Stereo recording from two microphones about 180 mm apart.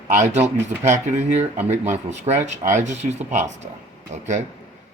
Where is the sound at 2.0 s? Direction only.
40° right (ahead or behind).